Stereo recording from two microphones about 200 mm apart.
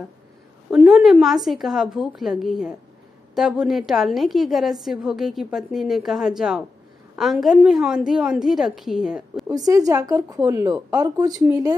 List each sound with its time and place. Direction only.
0.7 s a woman's voice: 5° right (ahead or behind)
9.5 s a woman's voice: 20° right (ahead or behind)